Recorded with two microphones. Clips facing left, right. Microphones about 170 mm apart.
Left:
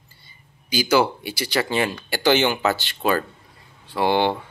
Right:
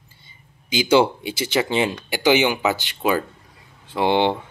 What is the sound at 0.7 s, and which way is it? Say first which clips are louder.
Speech: right 2 dB; 25° right (ahead or behind).